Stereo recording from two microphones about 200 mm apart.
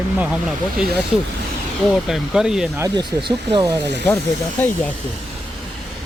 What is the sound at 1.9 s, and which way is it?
Speech, centre (ahead or behind).